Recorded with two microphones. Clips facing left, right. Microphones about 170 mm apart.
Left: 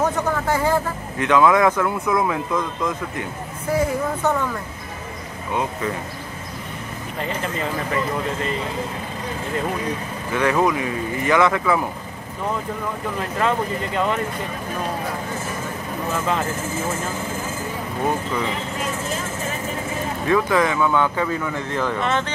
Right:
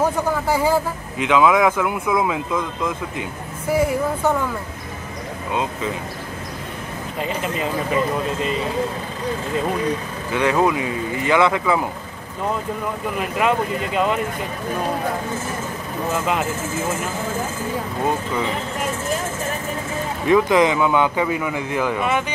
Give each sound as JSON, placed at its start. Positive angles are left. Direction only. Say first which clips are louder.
{"t": 0.0, "sound": "a sound", "louder": "right 1 dB", "side_deg": -10}
{"t": 1.3, "sound": "speech", "louder": "even", "side_deg": -10}
{"t": 3.7, "sound": "vehicle", "louder": "right 2 dB", "side_deg": -10}
{"t": 7.2, "sound": "speech", "louder": "right 2 dB", "side_deg": -15}
{"t": 10.3, "sound": "speech", "louder": "right 1 dB", "side_deg": -20}
{"t": 13.2, "sound": "speech", "louder": "right 2 dB", "side_deg": -15}
{"t": 16.1, "sound": "speech", "louder": "right 1 dB", "side_deg": -15}
{"t": 20.2, "sound": "speech", "louder": "right 4 dB", "side_deg": -20}